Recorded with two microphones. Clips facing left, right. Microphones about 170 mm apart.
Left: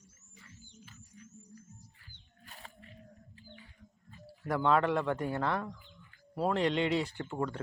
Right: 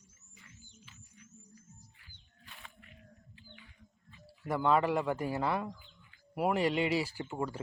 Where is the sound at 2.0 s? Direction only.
45° left (ahead or behind).